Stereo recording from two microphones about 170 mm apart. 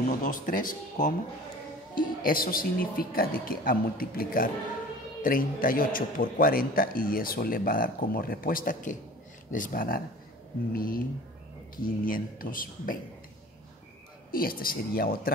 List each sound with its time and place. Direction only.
0.2 s speech: 50° left (ahead or behind)
14.3 s speech: 60° left (ahead or behind)